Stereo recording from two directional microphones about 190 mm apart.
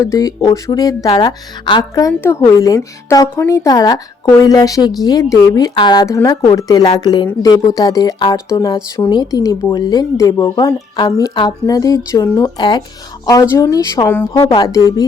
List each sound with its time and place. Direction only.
0.0 s speech: 15° left (ahead or behind)
14.1 s speech: 10° left (ahead or behind)
14.4 s speech: 25° left (ahead or behind)